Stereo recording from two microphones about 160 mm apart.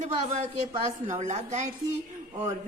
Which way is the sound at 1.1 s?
45° right (ahead or behind).